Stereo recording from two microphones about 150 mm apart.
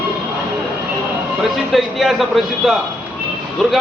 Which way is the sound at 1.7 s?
Centre (ahead or behind).